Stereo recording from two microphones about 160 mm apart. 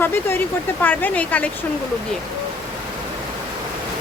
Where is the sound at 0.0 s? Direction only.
15° left (ahead or behind).